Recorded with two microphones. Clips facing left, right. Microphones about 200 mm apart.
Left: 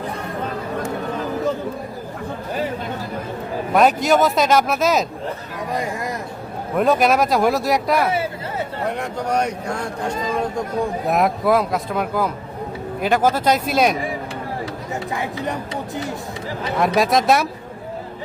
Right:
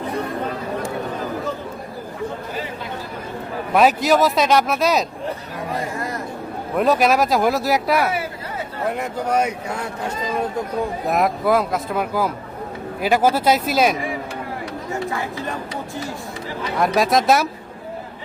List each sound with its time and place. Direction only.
3.8 s speech: centre (ahead or behind)
5.7 s a sound: 15° left (ahead or behind)
6.7 s speech: centre (ahead or behind)
8.1 s a sound: 25° left (ahead or behind)
8.9 s speech: 5° right (ahead or behind)
11.0 s speech: centre (ahead or behind)
15.1 s speech: 20° left (ahead or behind)
16.7 s speech: centre (ahead or behind)